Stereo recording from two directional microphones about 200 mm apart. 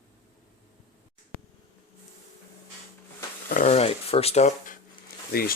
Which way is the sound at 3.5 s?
35° left (ahead or behind).